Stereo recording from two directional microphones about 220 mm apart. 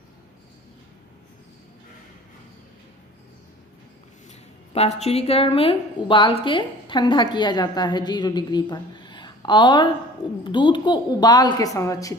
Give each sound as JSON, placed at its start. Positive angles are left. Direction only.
{"t": 4.3, "sound": "a woman's voice", "side_deg": 30}